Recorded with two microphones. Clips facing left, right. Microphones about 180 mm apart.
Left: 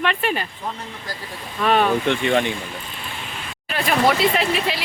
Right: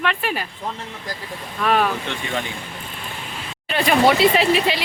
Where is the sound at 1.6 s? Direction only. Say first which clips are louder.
Left 1 dB; centre (ahead or behind).